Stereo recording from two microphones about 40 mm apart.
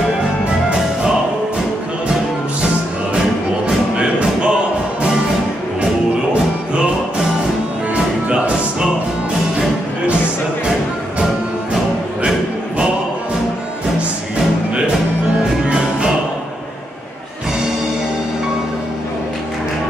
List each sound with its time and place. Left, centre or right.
3.6 s music: right
7.9 s music: right